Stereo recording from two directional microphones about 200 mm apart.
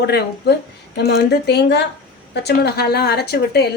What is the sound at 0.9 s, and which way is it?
A woman's voice, 55° left (ahead or behind).